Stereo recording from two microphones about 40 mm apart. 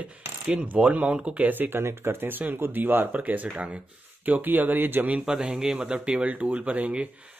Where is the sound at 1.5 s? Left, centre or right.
Right.